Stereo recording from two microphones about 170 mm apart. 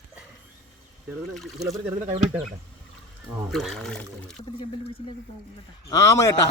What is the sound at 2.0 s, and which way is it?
Speech, 40° right (ahead or behind).